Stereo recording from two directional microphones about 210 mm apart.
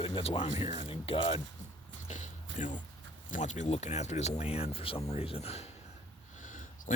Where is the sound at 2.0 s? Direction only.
35° left (ahead or behind).